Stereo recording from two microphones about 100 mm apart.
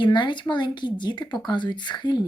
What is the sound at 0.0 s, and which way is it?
A woman's voice, 50° left (ahead or behind).